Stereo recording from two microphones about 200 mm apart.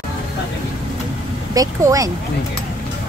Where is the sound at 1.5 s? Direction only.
15° right (ahead or behind).